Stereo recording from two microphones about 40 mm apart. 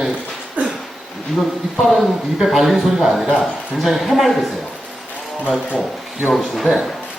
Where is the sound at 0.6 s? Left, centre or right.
Right.